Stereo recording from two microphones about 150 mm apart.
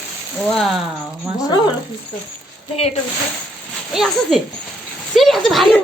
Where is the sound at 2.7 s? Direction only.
40° left (ahead or behind).